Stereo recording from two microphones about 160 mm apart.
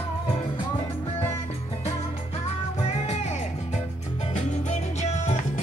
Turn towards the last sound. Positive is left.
turn(degrees=45)  # may be behind; listen again after turning